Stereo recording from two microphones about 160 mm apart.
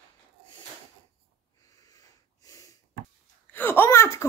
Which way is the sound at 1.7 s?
25° left (ahead or behind).